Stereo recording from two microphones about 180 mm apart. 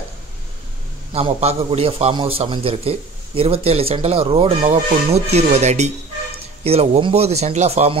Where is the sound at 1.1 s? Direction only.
35° right (ahead or behind).